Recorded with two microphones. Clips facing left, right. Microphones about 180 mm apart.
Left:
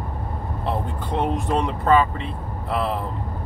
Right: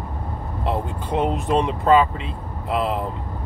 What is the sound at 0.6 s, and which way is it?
Speech, 15° right (ahead or behind).